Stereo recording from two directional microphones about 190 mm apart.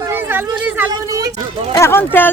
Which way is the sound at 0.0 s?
10° right (ahead or behind).